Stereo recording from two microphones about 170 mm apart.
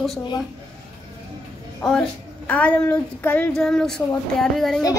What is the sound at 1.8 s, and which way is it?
Speech, centre (ahead or behind).